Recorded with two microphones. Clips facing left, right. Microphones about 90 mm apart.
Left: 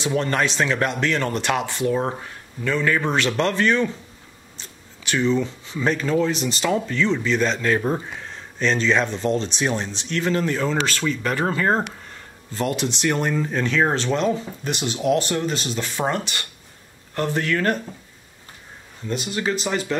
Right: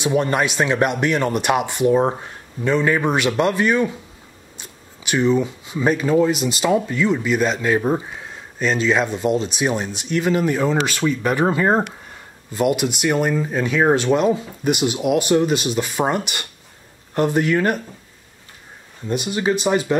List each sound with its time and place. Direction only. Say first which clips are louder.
0.0 s speech: right 3 dB; 15° right (ahead or behind)
19.0 s speech: right 4 dB; 15° right (ahead or behind)